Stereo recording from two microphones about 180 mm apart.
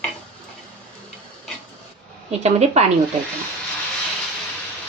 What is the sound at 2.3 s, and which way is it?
Speech, 35° right (ahead or behind).